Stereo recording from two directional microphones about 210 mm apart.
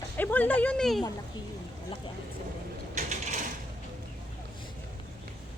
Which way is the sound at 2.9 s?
35° right (ahead or behind).